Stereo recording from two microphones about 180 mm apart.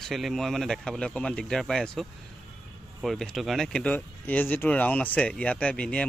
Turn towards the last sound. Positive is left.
turn(degrees=5)  # may be behind; listen again after turning